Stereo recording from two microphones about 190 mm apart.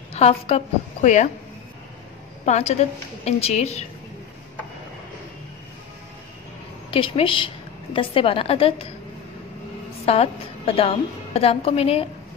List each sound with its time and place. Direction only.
0.1 s a woman's voice: 30° left (ahead or behind)
2.4 s a woman's voice: 35° left (ahead or behind)
6.9 s a woman's voice: 30° left (ahead or behind)
10.0 s a woman's voice: 30° left (ahead or behind)